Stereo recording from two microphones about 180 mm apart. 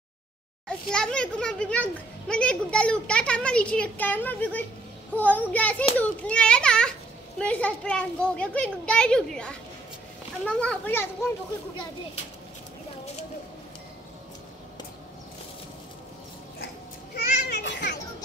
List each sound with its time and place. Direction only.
0.7 s a child's voice: 5° left (ahead or behind)
17.1 s children playing: 65° left (ahead or behind)